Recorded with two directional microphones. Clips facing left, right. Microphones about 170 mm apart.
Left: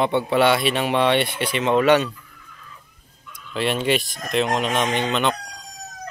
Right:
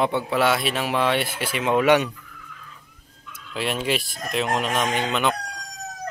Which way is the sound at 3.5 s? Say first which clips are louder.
Left 4 dB; 5° right (ahead or behind).